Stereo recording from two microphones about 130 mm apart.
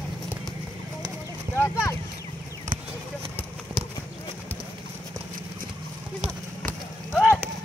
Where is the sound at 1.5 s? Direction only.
20° left (ahead or behind).